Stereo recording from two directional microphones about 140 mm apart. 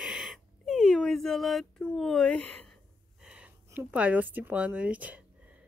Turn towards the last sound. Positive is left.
turn(degrees=-10)  # may be behind; listen again after turning